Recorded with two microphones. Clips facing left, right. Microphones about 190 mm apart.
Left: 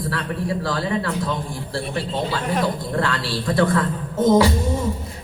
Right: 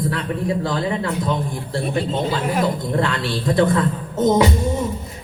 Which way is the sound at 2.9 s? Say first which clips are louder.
Right 2 dB; 20° right (ahead or behind).